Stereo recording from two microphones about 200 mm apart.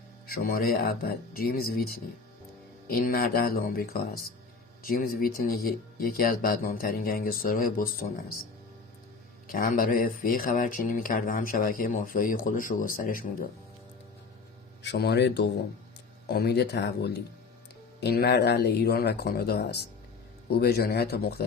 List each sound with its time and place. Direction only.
0.3 s speech: 50° left (ahead or behind)
9.5 s speech: 45° left (ahead or behind)
14.8 s speech: 55° left (ahead or behind)